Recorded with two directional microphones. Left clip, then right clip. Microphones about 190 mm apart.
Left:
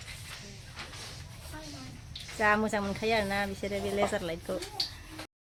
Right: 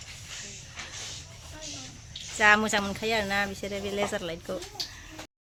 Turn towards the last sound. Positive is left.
turn(degrees=0)  # may be behind; listen again after turning